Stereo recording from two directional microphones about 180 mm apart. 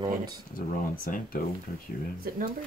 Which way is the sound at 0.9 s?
50° left (ahead or behind).